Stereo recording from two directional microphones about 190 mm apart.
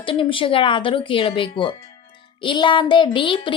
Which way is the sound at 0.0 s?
25° left (ahead or behind).